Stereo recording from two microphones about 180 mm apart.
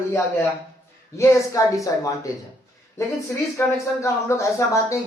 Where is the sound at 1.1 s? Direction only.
15° left (ahead or behind).